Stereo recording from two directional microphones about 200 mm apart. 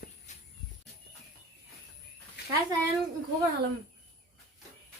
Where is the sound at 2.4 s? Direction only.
55° left (ahead or behind).